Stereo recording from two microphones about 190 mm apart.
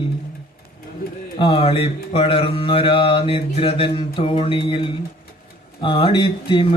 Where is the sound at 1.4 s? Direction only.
30° left (ahead or behind).